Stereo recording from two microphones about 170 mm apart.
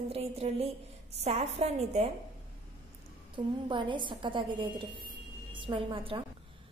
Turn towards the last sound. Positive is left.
turn(degrees=-30)  # may be behind; listen again after turning